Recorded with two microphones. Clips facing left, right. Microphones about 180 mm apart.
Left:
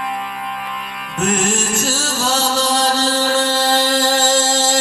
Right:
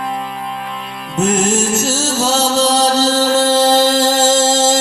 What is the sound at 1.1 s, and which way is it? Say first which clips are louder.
Music: right 4 dB; 25° right (ahead or behind).